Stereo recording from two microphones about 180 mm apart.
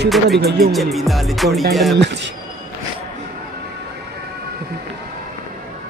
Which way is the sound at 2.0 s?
75° right (ahead or behind).